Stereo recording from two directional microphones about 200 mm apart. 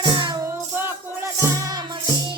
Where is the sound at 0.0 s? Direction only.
25° right (ahead or behind).